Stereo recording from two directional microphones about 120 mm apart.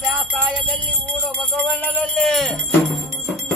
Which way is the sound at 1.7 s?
15° left (ahead or behind).